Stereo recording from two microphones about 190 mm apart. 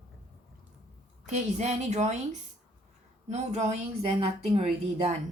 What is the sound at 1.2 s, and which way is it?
Speech, 40° right (ahead or behind).